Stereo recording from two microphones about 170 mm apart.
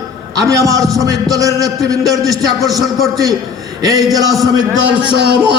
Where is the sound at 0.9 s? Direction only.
20° right (ahead or behind).